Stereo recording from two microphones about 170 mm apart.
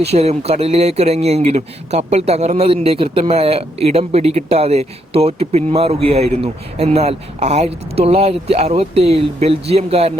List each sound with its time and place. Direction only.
0.0 s speech: 40° right (ahead or behind)